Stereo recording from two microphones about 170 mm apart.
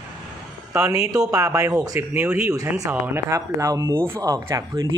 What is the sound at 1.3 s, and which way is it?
A man's voice, 20° right (ahead or behind).